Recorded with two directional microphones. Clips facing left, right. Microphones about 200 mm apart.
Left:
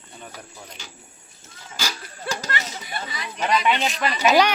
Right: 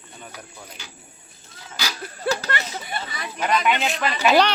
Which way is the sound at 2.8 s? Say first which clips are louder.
Right 1 dB; 50° right (ahead or behind).